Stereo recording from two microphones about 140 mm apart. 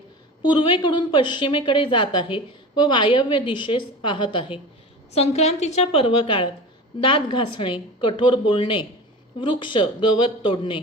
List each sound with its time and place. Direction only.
0.4 s a woman's voice: 35° left (ahead or behind)
5.1 s a woman's voice: 50° left (ahead or behind)